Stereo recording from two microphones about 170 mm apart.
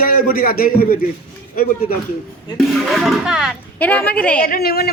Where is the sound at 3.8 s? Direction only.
10° left (ahead or behind).